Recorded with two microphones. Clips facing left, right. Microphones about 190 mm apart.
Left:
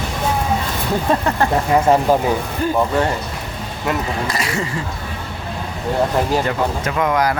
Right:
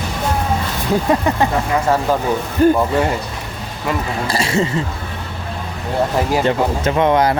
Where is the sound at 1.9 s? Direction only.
20° left (ahead or behind).